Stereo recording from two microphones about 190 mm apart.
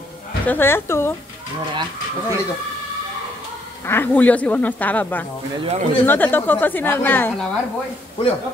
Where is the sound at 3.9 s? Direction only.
10° left (ahead or behind).